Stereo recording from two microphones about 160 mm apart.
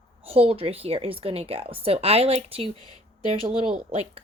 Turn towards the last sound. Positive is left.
turn(degrees=-40)  # may be behind; listen again after turning